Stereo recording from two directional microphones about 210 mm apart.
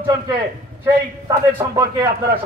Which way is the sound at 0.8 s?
15° right (ahead or behind).